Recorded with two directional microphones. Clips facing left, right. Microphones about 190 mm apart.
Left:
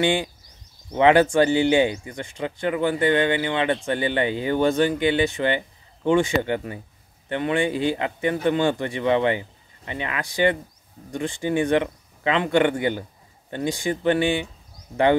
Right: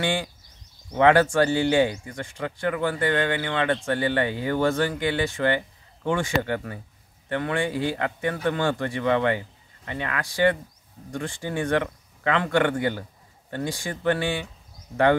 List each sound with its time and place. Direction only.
0.0 s speech: 20° left (ahead or behind)